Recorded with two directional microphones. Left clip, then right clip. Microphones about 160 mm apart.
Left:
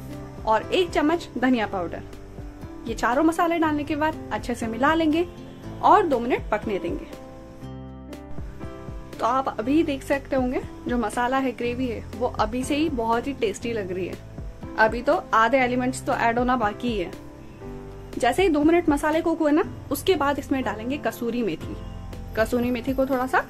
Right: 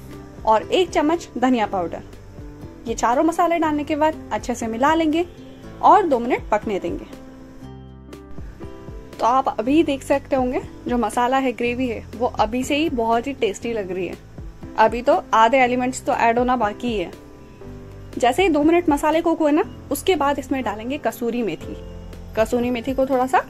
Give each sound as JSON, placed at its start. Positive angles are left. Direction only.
{"t": 0.5, "sound": "a woman's voice", "side_deg": -20}
{"t": 9.1, "sound": "a woman's voice", "side_deg": -20}
{"t": 18.2, "sound": "a woman's voice", "side_deg": -15}